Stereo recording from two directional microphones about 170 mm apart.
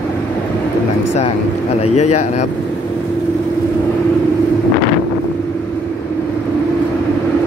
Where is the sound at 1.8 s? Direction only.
40° left (ahead or behind).